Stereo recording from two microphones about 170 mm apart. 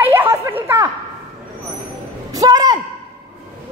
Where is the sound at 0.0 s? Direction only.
15° right (ahead or behind).